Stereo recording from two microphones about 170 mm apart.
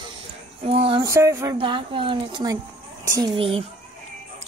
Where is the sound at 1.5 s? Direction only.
30° right (ahead or behind).